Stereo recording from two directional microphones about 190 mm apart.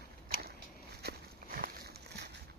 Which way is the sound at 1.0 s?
55° right (ahead or behind).